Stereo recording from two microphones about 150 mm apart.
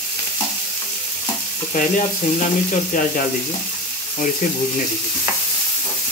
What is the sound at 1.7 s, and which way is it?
Frying, 55° left (ahead or behind).